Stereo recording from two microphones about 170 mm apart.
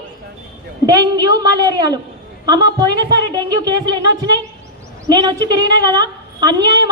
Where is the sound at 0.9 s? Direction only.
25° right (ahead or behind).